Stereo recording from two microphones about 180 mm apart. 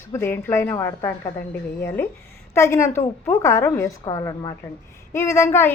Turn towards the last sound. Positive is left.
turn(degrees=15)  # may be behind; listen again after turning